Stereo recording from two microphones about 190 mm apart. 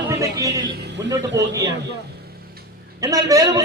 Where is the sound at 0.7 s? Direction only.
65° right (ahead or behind).